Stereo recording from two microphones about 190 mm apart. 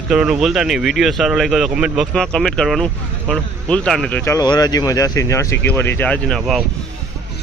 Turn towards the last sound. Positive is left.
turn(degrees=0)  # may be behind; listen again after turning